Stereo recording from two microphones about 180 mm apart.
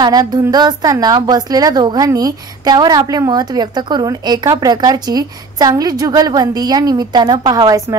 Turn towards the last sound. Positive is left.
turn(degrees=-20)  # may be behind; listen again after turning